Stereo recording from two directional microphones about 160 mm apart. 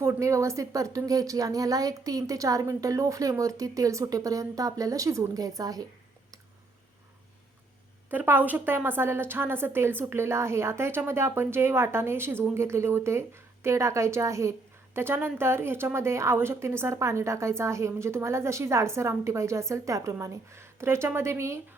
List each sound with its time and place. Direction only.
0.0 s a woman's voice: 20° right (ahead or behind)
8.1 s a woman's voice: 10° right (ahead or behind)